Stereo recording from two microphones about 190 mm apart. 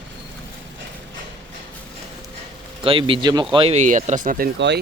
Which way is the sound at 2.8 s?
25° right (ahead or behind).